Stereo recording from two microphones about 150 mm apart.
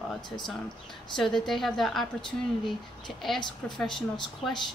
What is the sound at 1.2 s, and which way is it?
Speech, centre (ahead or behind).